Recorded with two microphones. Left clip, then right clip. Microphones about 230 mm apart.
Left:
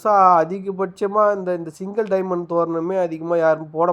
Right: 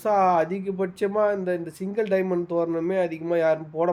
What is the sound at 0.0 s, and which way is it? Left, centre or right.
Speech, left.